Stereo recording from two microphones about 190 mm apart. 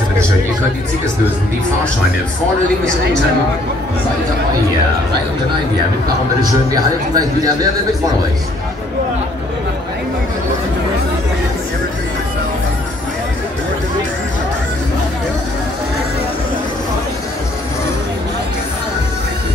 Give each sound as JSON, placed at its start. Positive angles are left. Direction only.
{"t": 6.7, "sound": "a man's voice", "side_deg": -20}